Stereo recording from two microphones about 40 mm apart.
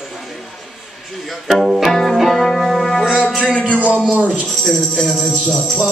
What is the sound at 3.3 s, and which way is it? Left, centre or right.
Music, centre.